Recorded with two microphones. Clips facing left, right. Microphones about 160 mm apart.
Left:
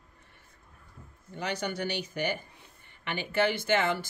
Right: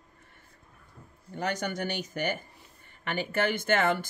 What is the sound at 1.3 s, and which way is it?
Speech, 50° right (ahead or behind).